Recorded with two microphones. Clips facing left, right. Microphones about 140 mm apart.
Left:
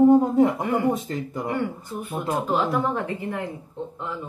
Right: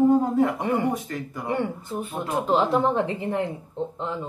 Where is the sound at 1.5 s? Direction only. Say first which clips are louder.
Right 3 dB; 25° right (ahead or behind).